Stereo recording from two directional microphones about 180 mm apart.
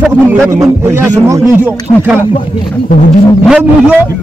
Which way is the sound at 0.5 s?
15° right (ahead or behind).